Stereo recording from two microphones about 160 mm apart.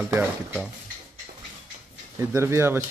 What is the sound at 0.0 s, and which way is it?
Speech, 15° right (ahead or behind).